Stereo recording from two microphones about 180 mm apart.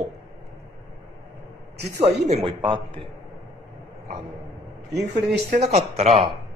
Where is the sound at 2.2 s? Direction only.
35° right (ahead or behind).